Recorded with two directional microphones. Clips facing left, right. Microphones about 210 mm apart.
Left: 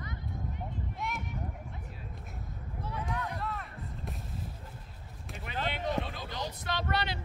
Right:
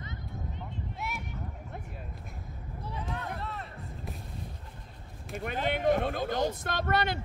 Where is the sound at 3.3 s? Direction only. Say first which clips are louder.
Left 1 dB; 25° right (ahead or behind).